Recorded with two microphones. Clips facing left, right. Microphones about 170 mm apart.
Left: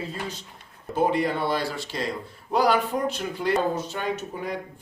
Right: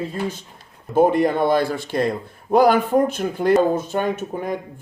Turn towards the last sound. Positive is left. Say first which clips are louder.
# right 5 dB
turn(degrees=-50)  # may be behind; listen again after turning